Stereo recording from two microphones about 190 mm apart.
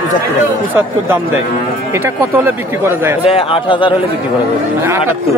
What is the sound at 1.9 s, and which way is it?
Speech, 10° right (ahead or behind).